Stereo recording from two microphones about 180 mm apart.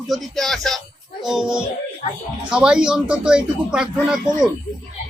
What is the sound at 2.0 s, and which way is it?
Speech, 35° left (ahead or behind).